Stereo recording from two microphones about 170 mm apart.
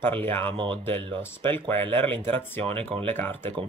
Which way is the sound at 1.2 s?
15° left (ahead or behind).